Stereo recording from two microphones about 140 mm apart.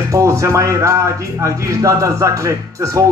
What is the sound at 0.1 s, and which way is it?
Speech, 20° right (ahead or behind).